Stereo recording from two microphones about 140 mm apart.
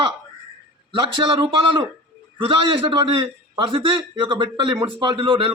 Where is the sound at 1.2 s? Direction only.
40° right (ahead or behind).